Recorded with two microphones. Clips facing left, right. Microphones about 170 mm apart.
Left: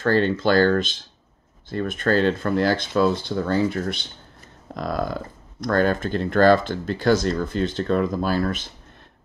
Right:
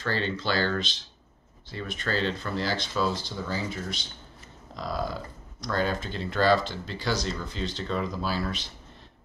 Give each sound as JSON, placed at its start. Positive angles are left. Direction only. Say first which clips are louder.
{"t": 0.0, "sound": "speech", "louder": "left 10 dB", "side_deg": 50}